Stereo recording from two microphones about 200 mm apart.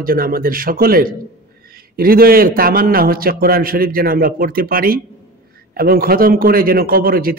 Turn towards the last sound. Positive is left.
turn(degrees=-45)  # may be behind; listen again after turning